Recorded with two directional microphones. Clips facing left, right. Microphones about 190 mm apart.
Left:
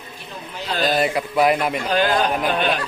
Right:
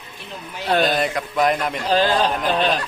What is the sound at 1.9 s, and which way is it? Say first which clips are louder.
Speech: right 2 dB; 35° right (ahead or behind).